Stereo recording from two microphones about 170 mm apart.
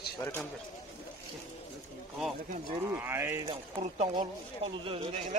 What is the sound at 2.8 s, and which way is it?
Speech, 15° right (ahead or behind).